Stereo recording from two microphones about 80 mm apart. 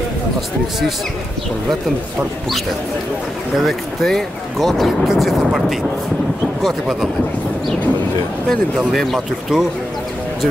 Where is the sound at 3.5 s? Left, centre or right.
Centre.